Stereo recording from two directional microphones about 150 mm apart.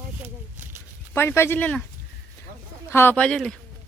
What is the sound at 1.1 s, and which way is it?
Speech, 15° left (ahead or behind).